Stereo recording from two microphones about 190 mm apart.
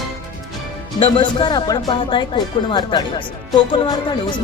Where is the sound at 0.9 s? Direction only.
30° left (ahead or behind).